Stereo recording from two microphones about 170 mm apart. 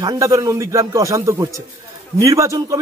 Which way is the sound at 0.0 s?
20° right (ahead or behind).